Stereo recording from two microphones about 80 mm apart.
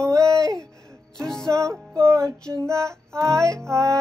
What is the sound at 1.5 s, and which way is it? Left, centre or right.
Music, right.